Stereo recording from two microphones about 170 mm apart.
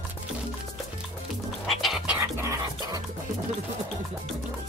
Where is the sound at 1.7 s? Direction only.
Centre (ahead or behind).